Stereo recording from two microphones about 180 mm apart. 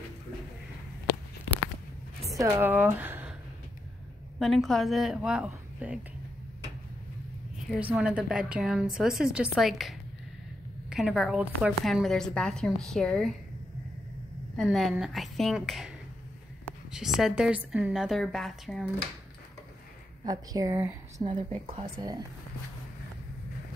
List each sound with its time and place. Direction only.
2.2 s a woman's voice: 15° right (ahead or behind)
4.4 s a woman's voice: centre (ahead or behind)
7.8 s a woman's voice: 5° right (ahead or behind)
14.6 s a woman's voice: centre (ahead or behind)
20.2 s speech: 20° right (ahead or behind)
21.2 s speech: 25° right (ahead or behind)